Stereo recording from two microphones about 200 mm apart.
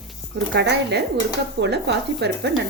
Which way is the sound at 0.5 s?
60° right (ahead or behind).